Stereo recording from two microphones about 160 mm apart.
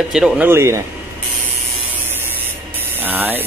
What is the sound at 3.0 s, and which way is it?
Speech, 10° right (ahead or behind).